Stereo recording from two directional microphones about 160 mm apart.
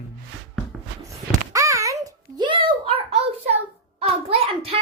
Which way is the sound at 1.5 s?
20° right (ahead or behind).